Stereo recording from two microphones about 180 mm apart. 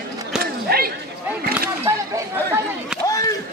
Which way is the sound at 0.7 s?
55° right (ahead or behind).